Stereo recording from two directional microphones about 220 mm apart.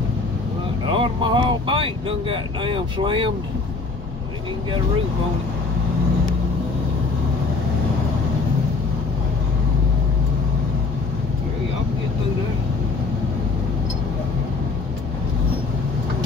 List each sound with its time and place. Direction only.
0.8 s speech: 20° right (ahead or behind)